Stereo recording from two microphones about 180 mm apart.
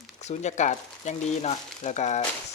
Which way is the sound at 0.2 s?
40° left (ahead or behind).